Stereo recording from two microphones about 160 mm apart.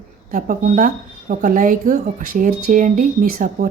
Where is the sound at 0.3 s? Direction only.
55° right (ahead or behind).